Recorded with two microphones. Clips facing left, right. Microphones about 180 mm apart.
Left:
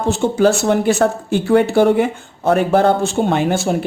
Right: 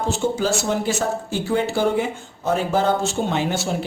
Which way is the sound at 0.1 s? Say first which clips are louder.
Left 9 dB; 60° left (ahead or behind).